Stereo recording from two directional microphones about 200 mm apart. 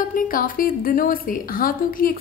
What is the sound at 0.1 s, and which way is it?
A woman's voice, 45° left (ahead or behind).